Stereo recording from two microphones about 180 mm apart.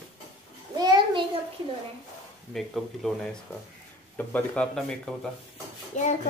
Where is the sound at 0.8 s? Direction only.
25° right (ahead or behind).